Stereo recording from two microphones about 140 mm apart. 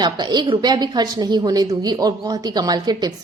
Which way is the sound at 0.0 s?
30° right (ahead or behind).